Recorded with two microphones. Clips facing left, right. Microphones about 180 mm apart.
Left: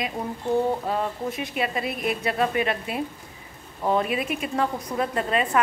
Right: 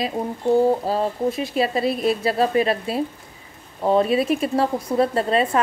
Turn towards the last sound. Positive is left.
turn(degrees=-35)  # may be behind; listen again after turning